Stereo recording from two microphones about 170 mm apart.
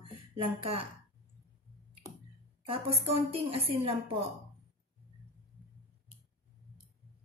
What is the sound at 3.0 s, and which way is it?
Speech, 30° right (ahead or behind).